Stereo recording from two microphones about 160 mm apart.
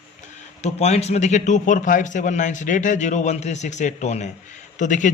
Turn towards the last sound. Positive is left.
turn(degrees=50)  # may be behind; listen again after turning